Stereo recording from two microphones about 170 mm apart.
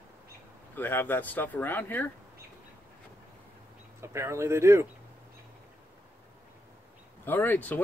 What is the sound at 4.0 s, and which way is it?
Speech, 15° right (ahead or behind).